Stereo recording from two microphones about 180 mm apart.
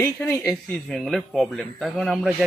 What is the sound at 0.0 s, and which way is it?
Speech, 15° left (ahead or behind).